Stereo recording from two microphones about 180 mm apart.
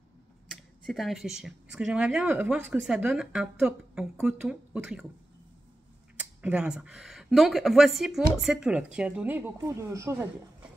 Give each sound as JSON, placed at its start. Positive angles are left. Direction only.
{"t": 0.5, "sound": "speech", "side_deg": 0}
{"t": 6.1, "sound": "speech", "side_deg": -5}